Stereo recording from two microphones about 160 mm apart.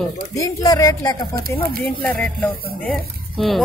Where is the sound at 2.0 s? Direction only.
10° left (ahead or behind).